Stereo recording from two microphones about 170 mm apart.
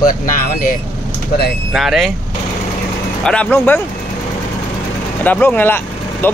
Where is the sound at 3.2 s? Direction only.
5° left (ahead or behind).